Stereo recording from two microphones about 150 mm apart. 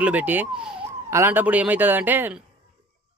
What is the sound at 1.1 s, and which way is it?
Speech, 15° right (ahead or behind).